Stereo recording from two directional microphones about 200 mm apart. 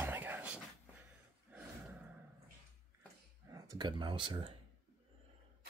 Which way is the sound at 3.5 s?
20° right (ahead or behind).